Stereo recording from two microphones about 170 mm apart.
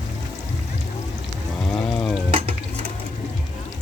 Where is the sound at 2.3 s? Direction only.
35° right (ahead or behind).